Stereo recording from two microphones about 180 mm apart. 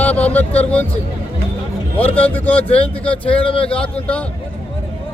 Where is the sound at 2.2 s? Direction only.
10° left (ahead or behind).